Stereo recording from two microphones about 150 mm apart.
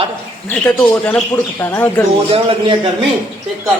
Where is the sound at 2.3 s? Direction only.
35° right (ahead or behind).